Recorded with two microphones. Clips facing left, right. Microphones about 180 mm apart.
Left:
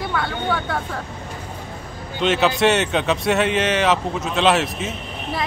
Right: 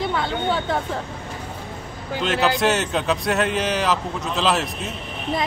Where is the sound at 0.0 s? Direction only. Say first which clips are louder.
Right 1 dB; 20° right (ahead or behind).